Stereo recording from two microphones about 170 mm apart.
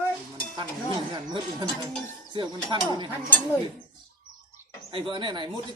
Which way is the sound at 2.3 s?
30° right (ahead or behind).